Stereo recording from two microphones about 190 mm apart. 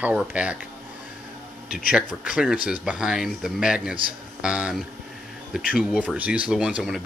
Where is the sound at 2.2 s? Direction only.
5° right (ahead or behind).